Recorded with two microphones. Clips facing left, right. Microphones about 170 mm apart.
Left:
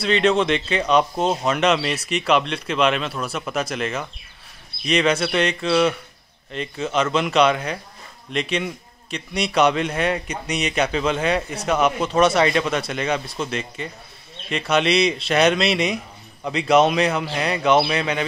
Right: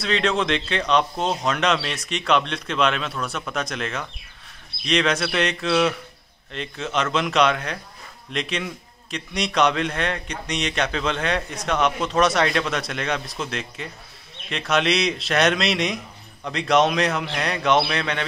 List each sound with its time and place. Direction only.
0.0 s a man's voice: centre (ahead or behind)